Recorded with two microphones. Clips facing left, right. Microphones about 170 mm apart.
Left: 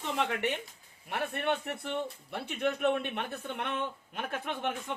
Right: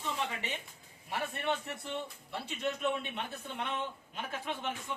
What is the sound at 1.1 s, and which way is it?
Speech, 60° left (ahead or behind).